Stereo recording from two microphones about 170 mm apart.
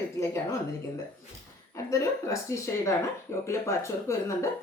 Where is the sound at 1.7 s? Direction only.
20° left (ahead or behind).